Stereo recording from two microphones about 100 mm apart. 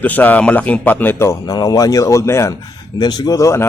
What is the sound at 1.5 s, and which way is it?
Speech, 40° left (ahead or behind).